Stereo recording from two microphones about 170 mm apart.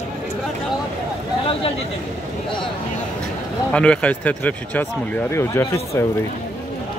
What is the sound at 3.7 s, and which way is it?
Speech, 5° left (ahead or behind).